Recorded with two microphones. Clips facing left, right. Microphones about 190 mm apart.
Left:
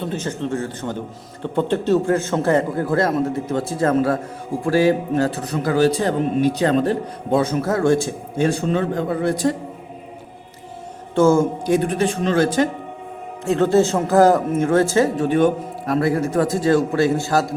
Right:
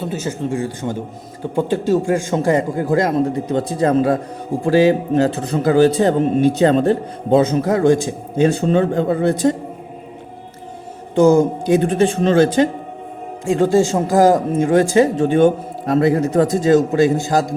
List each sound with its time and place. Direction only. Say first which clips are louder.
0.0 s a man's voice: right 2 dB; 5° right (ahead or behind); by 9.6 s 20° right (ahead or behind)
11.1 s a man's voice: right 3 dB; 15° right (ahead or behind)
13.4 s a man's voice: right 1 dB; 10° right (ahead or behind)